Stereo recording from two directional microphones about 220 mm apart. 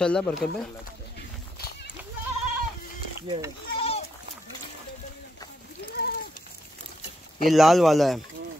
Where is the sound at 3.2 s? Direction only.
20° right (ahead or behind).